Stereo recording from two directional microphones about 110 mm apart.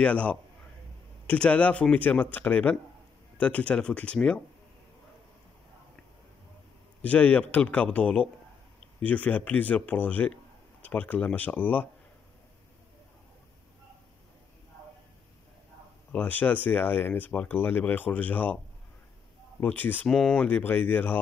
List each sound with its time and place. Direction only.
0.0 s speech: 10° left (ahead or behind)
7.0 s speech: 15° left (ahead or behind)
16.1 s speech: 15° left (ahead or behind)
19.6 s speech: 15° left (ahead or behind)